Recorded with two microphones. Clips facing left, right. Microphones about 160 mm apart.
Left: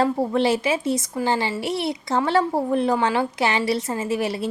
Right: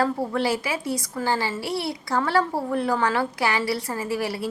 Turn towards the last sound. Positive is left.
turn(degrees=20)  # may be behind; listen again after turning